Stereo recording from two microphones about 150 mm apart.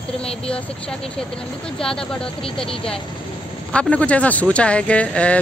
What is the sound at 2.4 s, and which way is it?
Speech, 35° left (ahead or behind).